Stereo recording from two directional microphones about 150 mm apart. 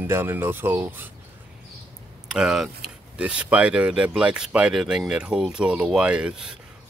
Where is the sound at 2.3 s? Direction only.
5° right (ahead or behind).